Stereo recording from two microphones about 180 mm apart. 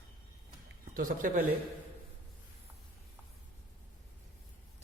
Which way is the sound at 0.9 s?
50° right (ahead or behind).